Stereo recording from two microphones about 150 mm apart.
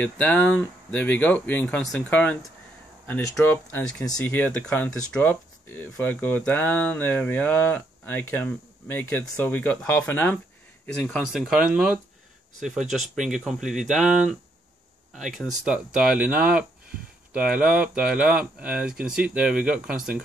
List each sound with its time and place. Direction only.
0.0 s speech: 10° left (ahead or behind)
15.1 s speech: centre (ahead or behind)